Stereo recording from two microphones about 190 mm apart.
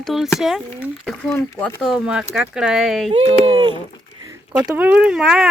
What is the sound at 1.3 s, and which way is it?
Speech, 10° left (ahead or behind).